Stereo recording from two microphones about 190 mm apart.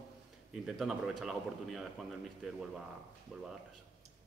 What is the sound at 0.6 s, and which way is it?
Speech, 5° right (ahead or behind).